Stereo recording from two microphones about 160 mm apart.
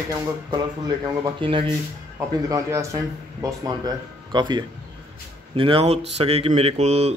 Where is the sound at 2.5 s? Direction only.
20° right (ahead or behind).